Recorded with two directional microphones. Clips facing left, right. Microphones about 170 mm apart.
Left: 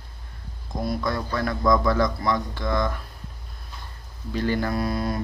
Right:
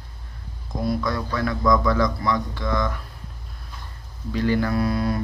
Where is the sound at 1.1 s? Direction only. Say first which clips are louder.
Right 1 dB; 40° left (ahead or behind).